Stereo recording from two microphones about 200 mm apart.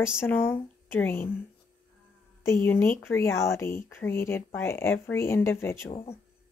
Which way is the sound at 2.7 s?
10° left (ahead or behind).